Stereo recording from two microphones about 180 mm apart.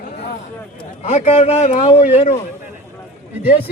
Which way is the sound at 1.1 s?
35° left (ahead or behind).